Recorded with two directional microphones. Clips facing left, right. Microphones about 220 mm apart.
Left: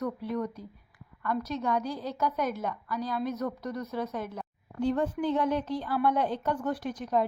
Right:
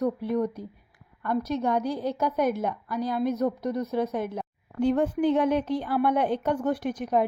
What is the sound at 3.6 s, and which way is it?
Speech, 20° right (ahead or behind).